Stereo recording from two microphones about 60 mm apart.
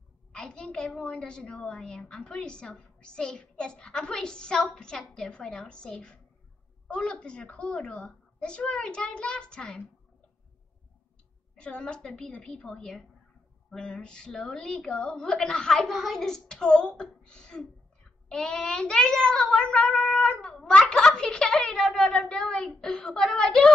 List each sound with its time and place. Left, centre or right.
0.3 s a woman's voice: centre
11.5 s a woman's voice: centre